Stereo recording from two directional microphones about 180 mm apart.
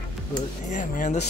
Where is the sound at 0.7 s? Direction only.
45° left (ahead or behind).